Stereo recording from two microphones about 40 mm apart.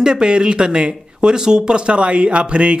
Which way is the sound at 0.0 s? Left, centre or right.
Right.